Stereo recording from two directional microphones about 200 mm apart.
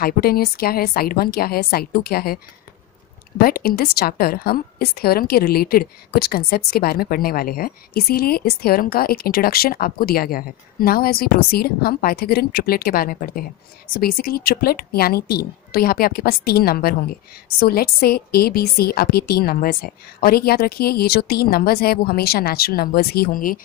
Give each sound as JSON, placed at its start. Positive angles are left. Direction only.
{"t": 0.0, "sound": "a woman's voice", "side_deg": 50}